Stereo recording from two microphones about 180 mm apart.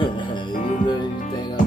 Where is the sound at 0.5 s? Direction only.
45° left (ahead or behind).